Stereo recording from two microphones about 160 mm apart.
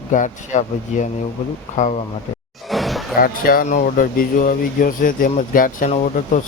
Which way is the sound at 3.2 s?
65° left (ahead or behind).